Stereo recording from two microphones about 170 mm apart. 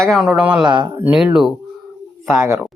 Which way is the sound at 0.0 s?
Centre (ahead or behind).